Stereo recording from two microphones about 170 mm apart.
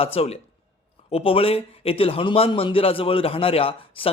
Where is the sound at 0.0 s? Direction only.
35° left (ahead or behind).